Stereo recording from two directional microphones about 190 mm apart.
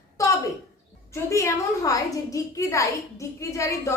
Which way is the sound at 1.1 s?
15° left (ahead or behind).